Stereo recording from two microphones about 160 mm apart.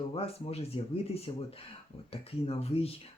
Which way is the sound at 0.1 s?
35° left (ahead or behind).